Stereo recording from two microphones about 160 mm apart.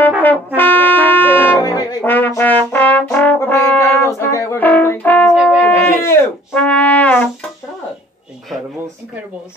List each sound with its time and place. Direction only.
0.6 s brass instrument: 10° left (ahead or behind)
1.6 s brass instrument: 25° left (ahead or behind)
2.0 s brass instrument: 10° left (ahead or behind)
5.3 s wind instrument: 5° right (ahead or behind)
5.6 s brass instrument: 15° left (ahead or behind)